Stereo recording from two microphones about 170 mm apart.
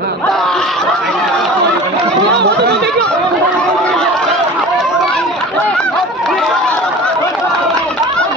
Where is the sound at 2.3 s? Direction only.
85° right.